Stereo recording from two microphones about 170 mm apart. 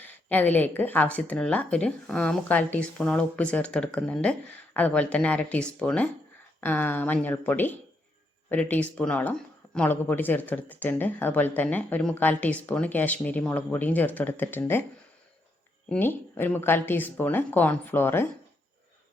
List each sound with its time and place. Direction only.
0.0 s speech: 10° left (ahead or behind)
15.9 s speech: 10° left (ahead or behind)